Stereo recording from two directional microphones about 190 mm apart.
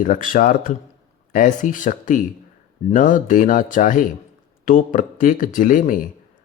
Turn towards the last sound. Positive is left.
turn(degrees=45)  # may be behind; listen again after turning